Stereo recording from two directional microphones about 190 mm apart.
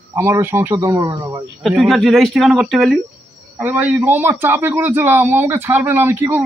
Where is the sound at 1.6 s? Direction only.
Centre (ahead or behind).